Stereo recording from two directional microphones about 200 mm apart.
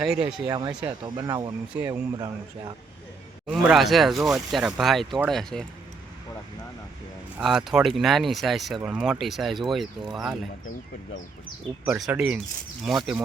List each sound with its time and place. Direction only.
0.0 s speech: 5° right (ahead or behind)
0.4 s speech: 20° right (ahead or behind)
1.7 s speech: 10° right (ahead or behind)
2.1 s speech: 20° right (ahead or behind)
3.4 s speech: centre (ahead or behind)
7.3 s speech: centre (ahead or behind)
11.9 s speech: 5° right (ahead or behind)